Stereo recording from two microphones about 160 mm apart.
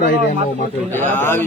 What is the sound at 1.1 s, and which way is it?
Speech, 15° left (ahead or behind).